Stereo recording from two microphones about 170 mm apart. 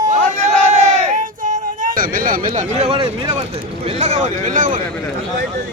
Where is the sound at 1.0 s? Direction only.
50° right (ahead or behind); by 3.4 s 30° right (ahead or behind).